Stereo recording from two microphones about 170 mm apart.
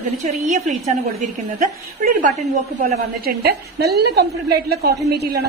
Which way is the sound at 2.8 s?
65° right (ahead or behind).